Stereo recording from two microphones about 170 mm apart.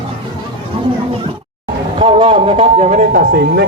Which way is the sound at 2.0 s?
30° right (ahead or behind).